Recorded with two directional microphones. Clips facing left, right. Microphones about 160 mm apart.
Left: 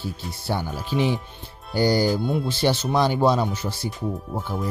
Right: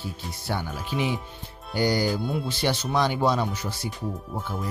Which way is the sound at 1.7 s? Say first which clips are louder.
Left 4 dB; 35° left (ahead or behind).